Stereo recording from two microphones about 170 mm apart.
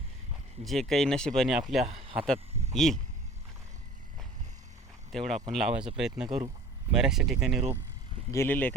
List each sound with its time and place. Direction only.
0.6 s speech: centre (ahead or behind)
1.8 s speech: 35° right (ahead or behind)
2.1 s speech: 5° left (ahead or behind)
5.1 s speech: centre (ahead or behind)
8.3 s speech: 15° left (ahead or behind)